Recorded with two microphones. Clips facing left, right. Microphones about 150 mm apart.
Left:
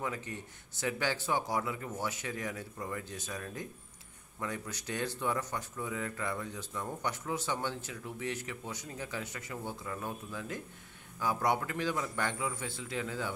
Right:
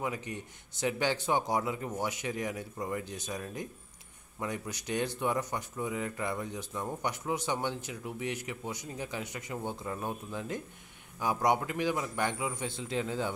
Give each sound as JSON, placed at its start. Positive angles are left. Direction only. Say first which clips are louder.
{"t": 0.0, "sound": "speech", "louder": "right 2 dB", "side_deg": -15}